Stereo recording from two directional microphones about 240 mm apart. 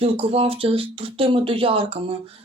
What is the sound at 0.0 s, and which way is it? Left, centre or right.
Speech, right.